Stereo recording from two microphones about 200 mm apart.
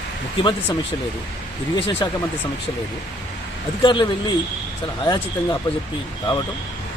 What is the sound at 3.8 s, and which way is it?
Speech, 25° left (ahead or behind).